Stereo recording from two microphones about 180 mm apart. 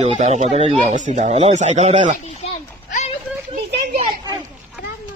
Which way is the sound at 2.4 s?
40° left (ahead or behind).